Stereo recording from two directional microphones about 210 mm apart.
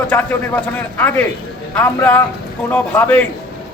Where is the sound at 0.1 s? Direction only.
10° left (ahead or behind).